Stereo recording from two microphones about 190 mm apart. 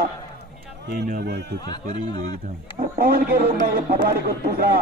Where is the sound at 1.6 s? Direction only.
20° left (ahead or behind).